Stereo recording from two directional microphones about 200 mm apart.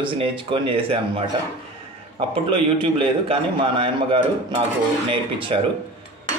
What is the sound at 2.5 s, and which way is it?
Speech, 30° right (ahead or behind).